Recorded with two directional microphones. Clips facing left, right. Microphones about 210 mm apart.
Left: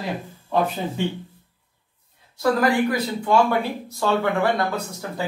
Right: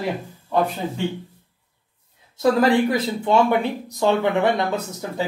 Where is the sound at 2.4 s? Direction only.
25° right (ahead or behind).